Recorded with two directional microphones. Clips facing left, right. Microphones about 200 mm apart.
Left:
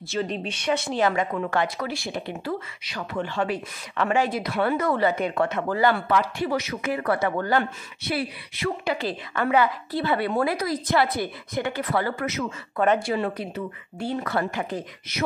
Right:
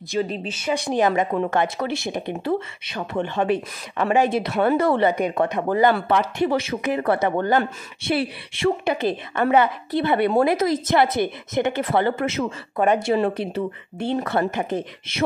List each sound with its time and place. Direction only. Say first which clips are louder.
0.1 s speech: right 3 dB; 10° right (ahead or behind)
0.7 s speech: right 5 dB; 15° right (ahead or behind)
5.1 s speech: right 3 dB; 20° right (ahead or behind)